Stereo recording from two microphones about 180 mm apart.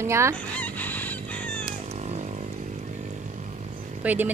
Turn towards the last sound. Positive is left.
turn(degrees=-10)  # may be behind; listen again after turning